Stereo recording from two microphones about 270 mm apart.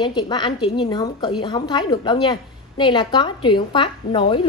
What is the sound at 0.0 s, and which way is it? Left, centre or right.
A woman's voice, centre.